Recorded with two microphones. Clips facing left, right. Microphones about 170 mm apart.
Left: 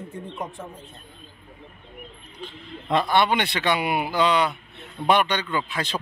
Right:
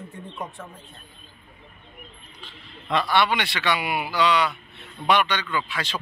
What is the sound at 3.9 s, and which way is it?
Speech, 20° left (ahead or behind).